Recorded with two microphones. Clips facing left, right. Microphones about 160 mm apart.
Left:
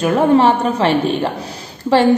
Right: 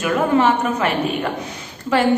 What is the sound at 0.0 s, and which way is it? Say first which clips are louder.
A woman's voice: left 4 dB; 30° left (ahead or behind).